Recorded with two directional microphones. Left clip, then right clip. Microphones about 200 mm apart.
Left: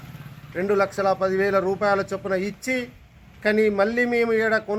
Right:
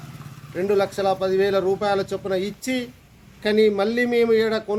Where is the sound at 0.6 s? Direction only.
Centre (ahead or behind).